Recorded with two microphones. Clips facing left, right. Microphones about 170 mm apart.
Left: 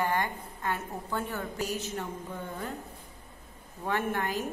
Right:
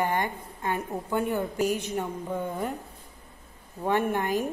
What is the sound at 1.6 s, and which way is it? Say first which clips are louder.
Speech: right 7 dB; 50° right (ahead or behind).